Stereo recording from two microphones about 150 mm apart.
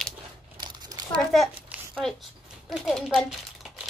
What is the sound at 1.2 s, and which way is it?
Speech, centre (ahead or behind).